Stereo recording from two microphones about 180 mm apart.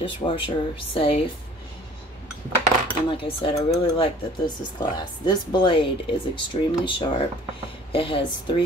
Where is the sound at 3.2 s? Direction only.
30° left (ahead or behind).